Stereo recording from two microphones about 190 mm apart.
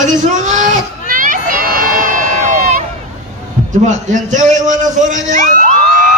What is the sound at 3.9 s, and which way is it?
A man's voice, 40° right (ahead or behind).